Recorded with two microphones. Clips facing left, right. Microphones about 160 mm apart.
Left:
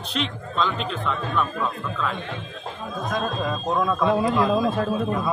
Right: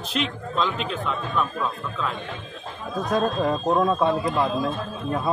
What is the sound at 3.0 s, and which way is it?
A man's voice, 35° right (ahead or behind).